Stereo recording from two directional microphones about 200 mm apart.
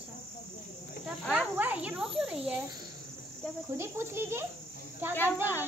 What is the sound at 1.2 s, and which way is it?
Speech, 5° right (ahead or behind).